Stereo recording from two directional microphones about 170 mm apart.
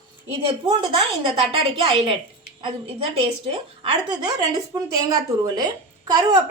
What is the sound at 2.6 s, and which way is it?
A woman's voice, 30° right (ahead or behind).